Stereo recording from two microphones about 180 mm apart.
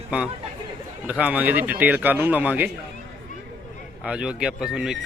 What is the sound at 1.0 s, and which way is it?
Speech, 5° right (ahead or behind).